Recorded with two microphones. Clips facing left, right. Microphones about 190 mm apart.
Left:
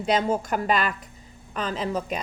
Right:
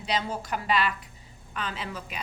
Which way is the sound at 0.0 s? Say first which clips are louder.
Left 7 dB; 50° left (ahead or behind).